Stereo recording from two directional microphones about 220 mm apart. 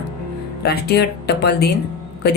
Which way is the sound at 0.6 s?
45° left (ahead or behind).